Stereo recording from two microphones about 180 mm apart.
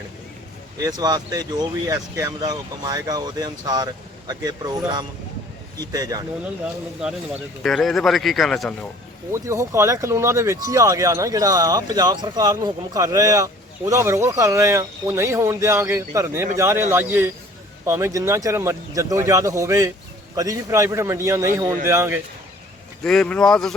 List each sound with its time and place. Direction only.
0.8 s speech: 20° right (ahead or behind)
7.6 s speech: centre (ahead or behind)
9.3 s speech: 15° right (ahead or behind)
23.0 s speech: 5° left (ahead or behind)